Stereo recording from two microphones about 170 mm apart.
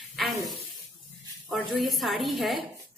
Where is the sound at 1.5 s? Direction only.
Centre (ahead or behind).